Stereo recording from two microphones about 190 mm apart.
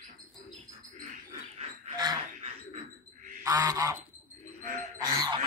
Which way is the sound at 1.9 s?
20° right (ahead or behind).